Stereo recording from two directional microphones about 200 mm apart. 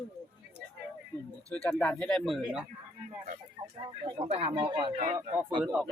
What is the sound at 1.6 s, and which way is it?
Speech, 10° left (ahead or behind).